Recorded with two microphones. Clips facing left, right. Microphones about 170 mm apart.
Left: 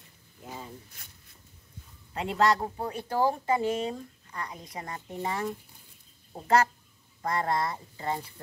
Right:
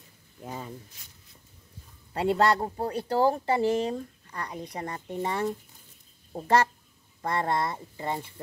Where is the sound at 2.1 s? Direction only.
35° right (ahead or behind).